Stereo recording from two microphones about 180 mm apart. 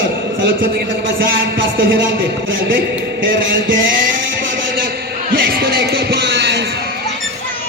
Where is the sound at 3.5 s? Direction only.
90° right.